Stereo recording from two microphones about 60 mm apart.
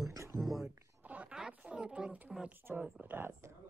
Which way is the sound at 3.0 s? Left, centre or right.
Right.